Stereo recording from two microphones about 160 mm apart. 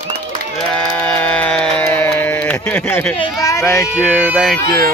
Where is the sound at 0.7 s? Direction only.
5° left (ahead or behind).